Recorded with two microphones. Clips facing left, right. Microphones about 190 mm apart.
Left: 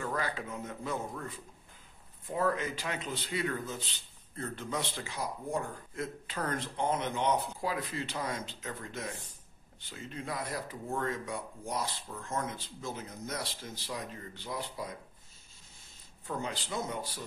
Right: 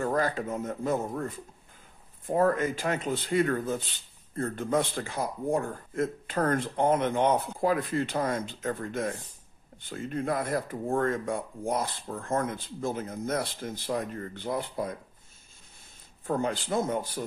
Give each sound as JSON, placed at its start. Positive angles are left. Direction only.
{"t": 0.0, "sound": "speech", "side_deg": -45}
{"t": 16.3, "sound": "speech", "side_deg": -50}